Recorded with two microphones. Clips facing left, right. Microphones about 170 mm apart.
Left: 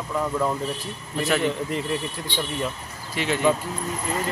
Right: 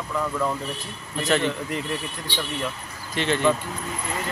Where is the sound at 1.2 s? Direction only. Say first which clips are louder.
Even; 5° left (ahead or behind).